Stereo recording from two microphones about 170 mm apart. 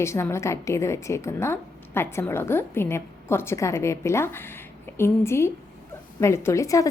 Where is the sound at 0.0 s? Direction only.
15° left (ahead or behind).